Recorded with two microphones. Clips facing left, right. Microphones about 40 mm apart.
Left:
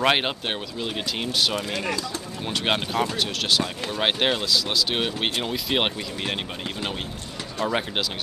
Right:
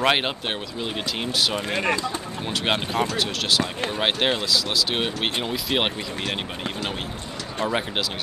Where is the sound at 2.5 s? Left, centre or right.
Centre.